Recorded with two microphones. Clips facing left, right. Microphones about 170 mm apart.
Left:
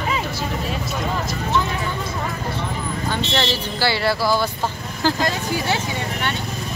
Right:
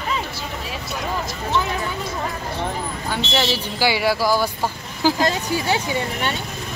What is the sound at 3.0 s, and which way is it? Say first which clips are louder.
Speech: even; 10° right (ahead or behind).